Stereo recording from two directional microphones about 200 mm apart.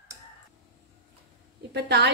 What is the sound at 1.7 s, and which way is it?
Speech, 55° right (ahead or behind).